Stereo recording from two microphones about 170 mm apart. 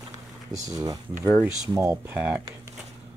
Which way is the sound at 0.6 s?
20° right (ahead or behind).